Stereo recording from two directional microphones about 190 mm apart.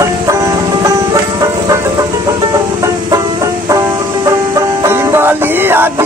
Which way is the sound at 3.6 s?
20° right (ahead or behind).